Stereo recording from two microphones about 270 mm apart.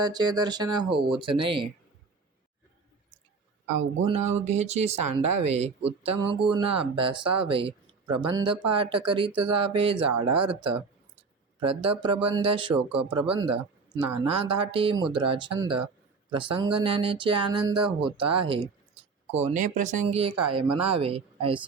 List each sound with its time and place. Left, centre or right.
0.0 s speech: centre
4.4 s speech: right
10.1 s speech: right
10.5 s speech: centre